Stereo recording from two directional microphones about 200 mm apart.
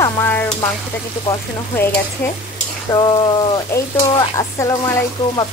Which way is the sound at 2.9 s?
20° left (ahead or behind).